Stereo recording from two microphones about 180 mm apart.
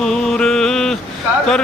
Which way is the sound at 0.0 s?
5° left (ahead or behind).